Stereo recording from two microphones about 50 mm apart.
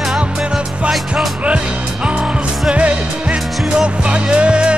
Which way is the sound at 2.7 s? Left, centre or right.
Right.